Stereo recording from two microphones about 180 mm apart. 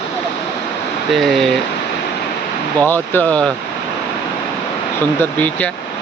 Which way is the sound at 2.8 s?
10° left (ahead or behind).